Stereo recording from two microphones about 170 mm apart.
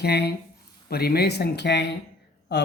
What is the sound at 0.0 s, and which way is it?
Speech, 70° left (ahead or behind).